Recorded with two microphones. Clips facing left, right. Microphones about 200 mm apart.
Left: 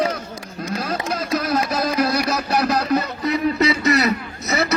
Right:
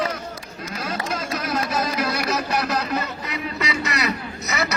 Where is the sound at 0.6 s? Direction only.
40° left (ahead or behind).